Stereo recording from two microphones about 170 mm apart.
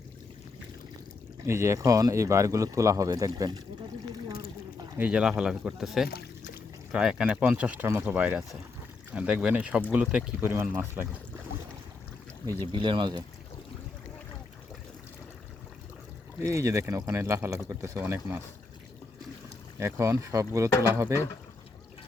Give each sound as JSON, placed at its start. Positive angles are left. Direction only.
{"t": 1.5, "sound": "speech", "side_deg": -15}
{"t": 4.9, "sound": "speech", "side_deg": -5}
{"t": 12.7, "sound": "speech", "side_deg": -30}
{"t": 16.4, "sound": "speech", "side_deg": -15}
{"t": 19.8, "sound": "speech", "side_deg": -15}
{"t": 20.7, "sound": "speech", "side_deg": 15}
{"t": 21.1, "sound": "speech", "side_deg": -15}